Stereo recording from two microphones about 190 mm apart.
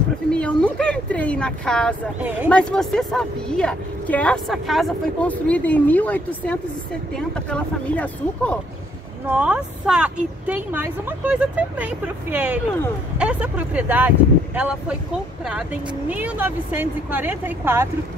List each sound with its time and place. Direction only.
0.3 s speech: 5° left (ahead or behind)
9.3 s a woman's voice: 5° right (ahead or behind)